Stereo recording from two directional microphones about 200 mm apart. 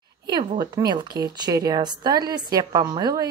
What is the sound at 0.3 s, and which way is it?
A woman's voice, 25° right (ahead or behind).